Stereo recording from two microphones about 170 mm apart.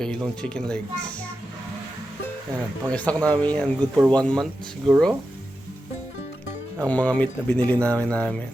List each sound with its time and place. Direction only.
0.0 s speech: 5° left (ahead or behind)
2.9 s speech: 5° left (ahead or behind)
6.7 s speech: 10° left (ahead or behind)